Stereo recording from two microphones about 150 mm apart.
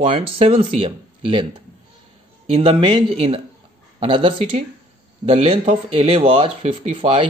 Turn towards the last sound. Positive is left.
turn(degrees=-40)  # may be behind; listen again after turning